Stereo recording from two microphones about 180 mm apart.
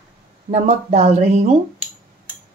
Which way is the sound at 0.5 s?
40° right (ahead or behind).